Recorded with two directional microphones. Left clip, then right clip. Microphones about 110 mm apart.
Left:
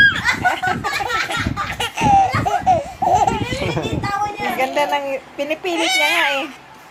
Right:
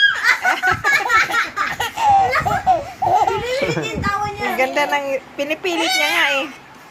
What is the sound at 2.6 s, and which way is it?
Laughter, 20° left (ahead or behind).